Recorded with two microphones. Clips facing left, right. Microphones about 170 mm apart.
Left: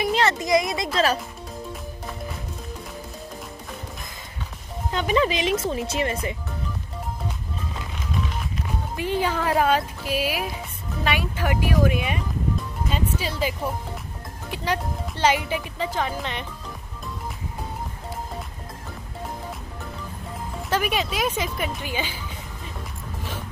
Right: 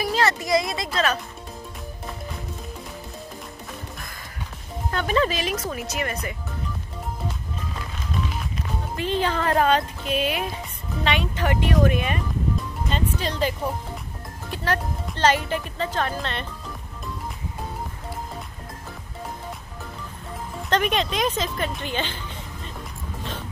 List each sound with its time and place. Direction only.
0.0 s speech: 20° left (ahead or behind)
4.9 s speech: 15° left (ahead or behind)
8.9 s speech: 10° left (ahead or behind)
20.7 s speech: 5° left (ahead or behind)